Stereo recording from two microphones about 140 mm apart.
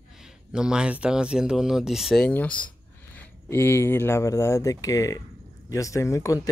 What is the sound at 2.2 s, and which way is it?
Speech, 10° left (ahead or behind).